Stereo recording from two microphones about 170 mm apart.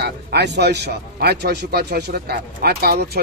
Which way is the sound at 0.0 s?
75° right (ahead or behind).